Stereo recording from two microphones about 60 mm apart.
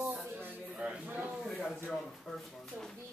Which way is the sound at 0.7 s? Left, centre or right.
Centre.